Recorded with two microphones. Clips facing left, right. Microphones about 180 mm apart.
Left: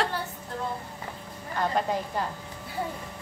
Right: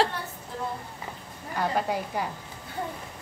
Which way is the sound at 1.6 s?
5° right (ahead or behind).